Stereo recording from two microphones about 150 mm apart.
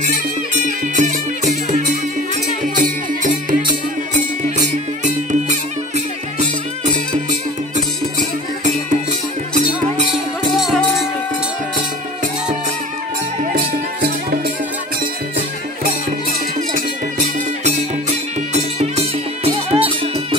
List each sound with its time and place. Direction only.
0.7 s music: 55° right (ahead or behind)
5.0 s music: 55° right (ahead or behind)
7.2 s music: 55° right (ahead or behind)
10.5 s music: centre (ahead or behind)
13.4 s music: 65° right (ahead or behind)
18.5 s music: 45° right (ahead or behind)